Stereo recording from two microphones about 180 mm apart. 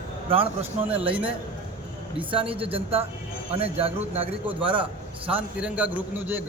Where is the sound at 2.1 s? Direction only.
30° right (ahead or behind).